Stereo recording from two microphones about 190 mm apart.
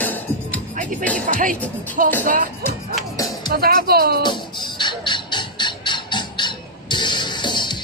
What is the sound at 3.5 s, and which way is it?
Speech, 55° right (ahead or behind).